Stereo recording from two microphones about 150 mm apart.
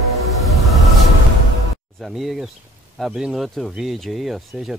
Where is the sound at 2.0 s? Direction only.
Centre (ahead or behind).